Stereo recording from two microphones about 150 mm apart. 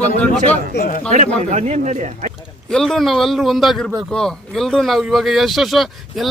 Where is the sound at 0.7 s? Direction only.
65° left (ahead or behind).